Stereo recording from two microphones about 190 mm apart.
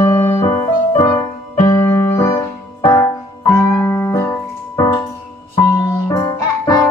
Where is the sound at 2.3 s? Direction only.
15° left (ahead or behind).